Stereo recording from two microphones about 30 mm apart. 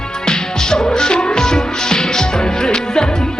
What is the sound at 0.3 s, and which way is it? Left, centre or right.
Music, left.